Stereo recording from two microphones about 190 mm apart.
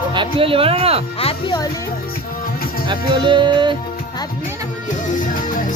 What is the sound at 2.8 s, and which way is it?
Speech, 25° right (ahead or behind).